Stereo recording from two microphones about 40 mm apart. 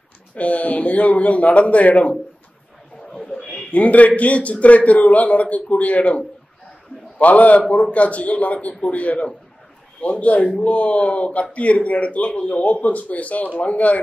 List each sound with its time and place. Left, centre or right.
0.3 s a man's voice: left
3.1 s a sound: centre
3.7 s a man's voice: left